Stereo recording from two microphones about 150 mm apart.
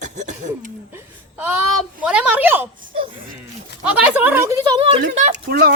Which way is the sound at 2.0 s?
10° right (ahead or behind).